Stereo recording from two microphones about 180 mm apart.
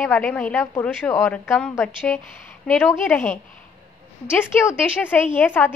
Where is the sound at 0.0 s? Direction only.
10° left (ahead or behind).